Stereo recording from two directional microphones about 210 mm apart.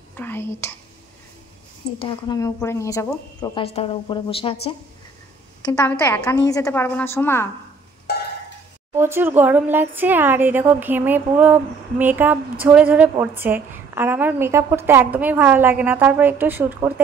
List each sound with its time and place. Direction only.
0.1 s speech: 10° left (ahead or behind)
2.0 s speech: 20° left (ahead or behind)
5.8 s a woman's voice: 10° left (ahead or behind)
8.9 s speech: 10° right (ahead or behind)